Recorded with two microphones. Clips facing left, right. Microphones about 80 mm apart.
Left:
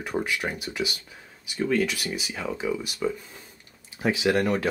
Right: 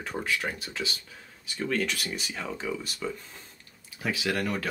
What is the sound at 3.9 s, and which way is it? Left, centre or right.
Speech, left.